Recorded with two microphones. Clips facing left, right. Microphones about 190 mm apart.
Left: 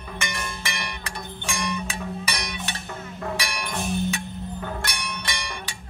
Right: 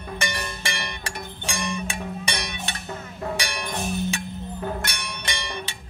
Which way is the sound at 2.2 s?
25° right (ahead or behind).